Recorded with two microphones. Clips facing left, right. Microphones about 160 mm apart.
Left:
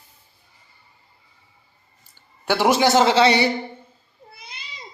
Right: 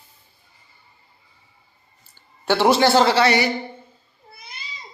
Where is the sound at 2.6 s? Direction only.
20° left (ahead or behind).